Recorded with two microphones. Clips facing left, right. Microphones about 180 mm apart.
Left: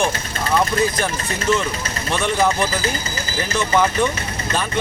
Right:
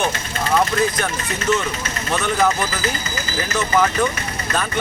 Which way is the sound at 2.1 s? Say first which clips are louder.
Even; 30° left (ahead or behind).